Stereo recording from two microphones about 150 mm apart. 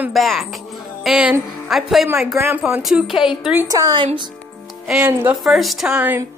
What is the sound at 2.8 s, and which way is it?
Speech, centre (ahead or behind).